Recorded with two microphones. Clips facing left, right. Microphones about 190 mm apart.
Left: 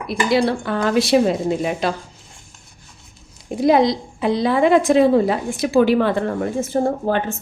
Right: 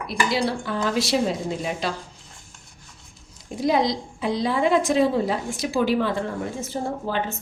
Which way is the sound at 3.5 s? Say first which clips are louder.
Left 6 dB; 60° left (ahead or behind).